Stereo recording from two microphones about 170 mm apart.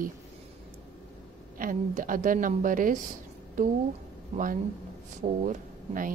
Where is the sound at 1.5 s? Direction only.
55° right (ahead or behind).